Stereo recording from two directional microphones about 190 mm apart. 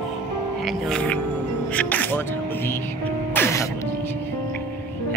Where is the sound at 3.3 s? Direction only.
15° left (ahead or behind).